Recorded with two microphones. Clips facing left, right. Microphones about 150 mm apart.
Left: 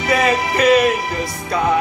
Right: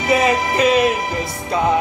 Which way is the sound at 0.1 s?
20° right (ahead or behind).